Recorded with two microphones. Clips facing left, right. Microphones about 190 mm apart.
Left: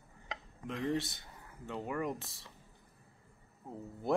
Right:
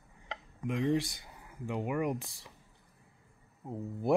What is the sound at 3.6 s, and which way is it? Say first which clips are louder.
Speech: right 5 dB; 15° right (ahead or behind).